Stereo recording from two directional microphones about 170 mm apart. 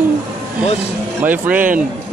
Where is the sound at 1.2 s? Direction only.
10° right (ahead or behind).